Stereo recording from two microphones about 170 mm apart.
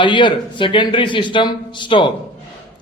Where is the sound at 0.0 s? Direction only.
30° left (ahead or behind).